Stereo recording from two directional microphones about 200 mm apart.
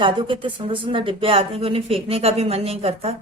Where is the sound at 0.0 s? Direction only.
25° right (ahead or behind).